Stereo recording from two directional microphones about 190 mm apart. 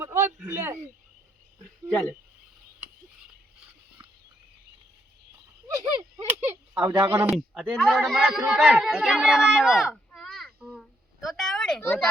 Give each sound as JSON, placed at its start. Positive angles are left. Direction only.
{"t": 0.0, "sound": "a man's voice", "side_deg": -15}
{"t": 5.6, "sound": "a sound", "side_deg": -20}
{"t": 6.2, "sound": "speech", "side_deg": -10}
{"t": 7.3, "sound": "speech", "side_deg": 0}
{"t": 10.1, "sound": "babbling", "side_deg": 5}